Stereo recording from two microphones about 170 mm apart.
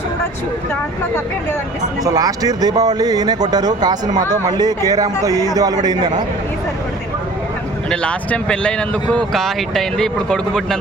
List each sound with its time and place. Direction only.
2.0 s speech: 20° right (ahead or behind)
7.9 s speech: 5° left (ahead or behind)